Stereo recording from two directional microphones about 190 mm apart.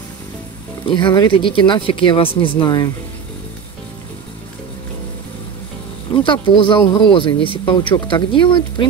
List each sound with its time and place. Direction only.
0.8 s speech: 25° left (ahead or behind)
6.1 s speech: 25° left (ahead or behind)